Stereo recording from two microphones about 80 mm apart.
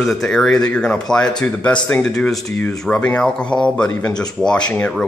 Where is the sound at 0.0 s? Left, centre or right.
Centre.